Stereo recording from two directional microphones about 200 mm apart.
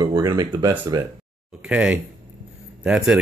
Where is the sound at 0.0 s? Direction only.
20° right (ahead or behind).